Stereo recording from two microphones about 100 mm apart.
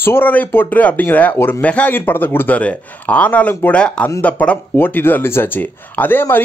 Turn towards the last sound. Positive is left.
turn(degrees=20)  # may be behind; listen again after turning